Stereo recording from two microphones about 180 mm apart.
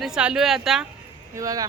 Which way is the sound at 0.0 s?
5° right (ahead or behind).